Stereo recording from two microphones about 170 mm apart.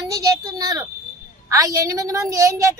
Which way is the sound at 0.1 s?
20° right (ahead or behind).